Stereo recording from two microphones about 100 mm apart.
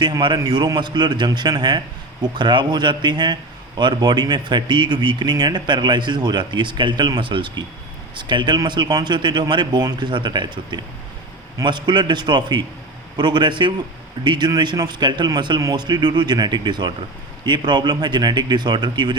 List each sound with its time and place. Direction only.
0.0 s speech: 50° right (ahead or behind)